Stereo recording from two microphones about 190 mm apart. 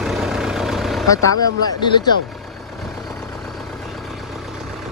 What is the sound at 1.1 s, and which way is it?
Speech, 15° left (ahead or behind).